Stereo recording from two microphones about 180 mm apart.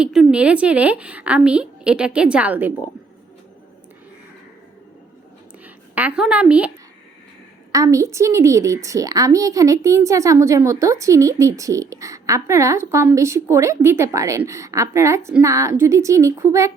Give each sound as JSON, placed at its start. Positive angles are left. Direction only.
{"t": 0.0, "sound": "a woman's voice", "side_deg": -5}
{"t": 5.6, "sound": "a woman's voice", "side_deg": -10}
{"t": 7.7, "sound": "a woman's voice", "side_deg": -20}